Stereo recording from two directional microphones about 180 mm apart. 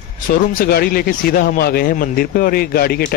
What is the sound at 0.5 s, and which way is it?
Speech, 55° left (ahead or behind).